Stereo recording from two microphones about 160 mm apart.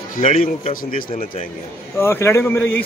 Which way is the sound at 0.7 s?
60° left (ahead or behind).